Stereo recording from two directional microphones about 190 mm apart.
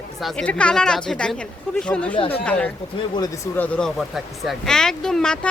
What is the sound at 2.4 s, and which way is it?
Speech, 5° left (ahead or behind).